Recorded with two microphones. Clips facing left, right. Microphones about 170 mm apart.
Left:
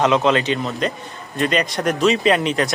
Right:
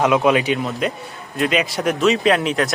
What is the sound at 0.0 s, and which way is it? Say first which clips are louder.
Speech: right 1 dB; 10° right (ahead or behind).